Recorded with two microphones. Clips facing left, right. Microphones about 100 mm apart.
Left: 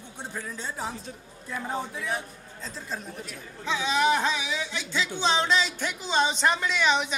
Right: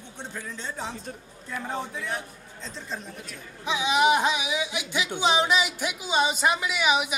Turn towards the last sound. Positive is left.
turn(degrees=-10)  # may be behind; listen again after turning